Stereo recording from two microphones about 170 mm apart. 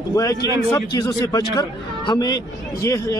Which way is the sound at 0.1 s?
20° left (ahead or behind).